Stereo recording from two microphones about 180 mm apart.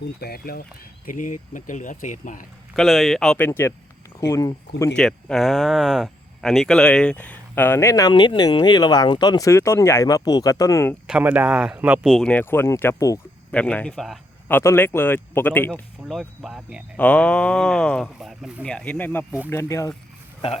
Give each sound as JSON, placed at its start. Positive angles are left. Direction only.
{"t": 0.0, "sound": "speech", "side_deg": 60}
{"t": 1.0, "sound": "speech", "side_deg": 45}
{"t": 2.7, "sound": "speech", "side_deg": 0}
{"t": 4.9, "sound": "speech", "side_deg": 0}
{"t": 11.0, "sound": "speech", "side_deg": -5}
{"t": 14.4, "sound": "speech", "side_deg": 15}